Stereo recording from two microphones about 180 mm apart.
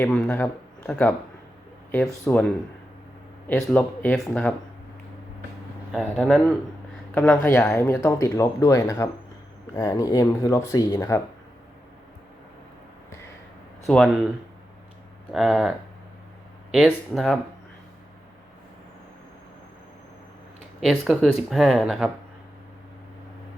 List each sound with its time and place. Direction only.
0.0 s speech: 10° left (ahead or behind)
2.2 s speech: 10° left (ahead or behind)
5.9 s speech: centre (ahead or behind); by 11.2 s 20° left (ahead or behind)
13.8 s speech: centre (ahead or behind)
15.3 s speech: centre (ahead or behind)
16.7 s speech: centre (ahead or behind)
20.8 s speech: centre (ahead or behind)